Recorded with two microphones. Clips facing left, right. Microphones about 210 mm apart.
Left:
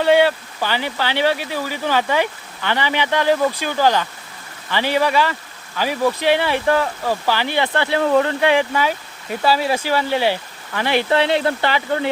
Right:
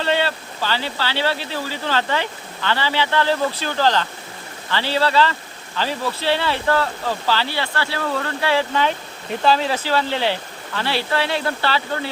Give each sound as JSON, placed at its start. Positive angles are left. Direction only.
{"t": 0.0, "sound": "speech", "side_deg": 15}